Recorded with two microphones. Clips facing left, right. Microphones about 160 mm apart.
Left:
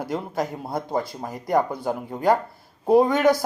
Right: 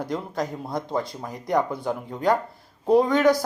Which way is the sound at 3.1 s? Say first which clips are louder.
Even; 5° left (ahead or behind).